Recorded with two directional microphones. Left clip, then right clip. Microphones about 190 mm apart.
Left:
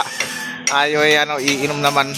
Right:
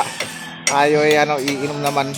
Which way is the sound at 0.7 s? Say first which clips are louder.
Even; 5° left (ahead or behind).